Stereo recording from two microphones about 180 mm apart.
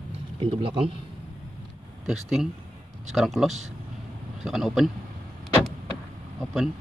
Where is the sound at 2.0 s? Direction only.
5° right (ahead or behind).